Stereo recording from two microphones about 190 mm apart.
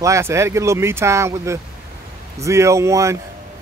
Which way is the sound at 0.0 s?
15° right (ahead or behind).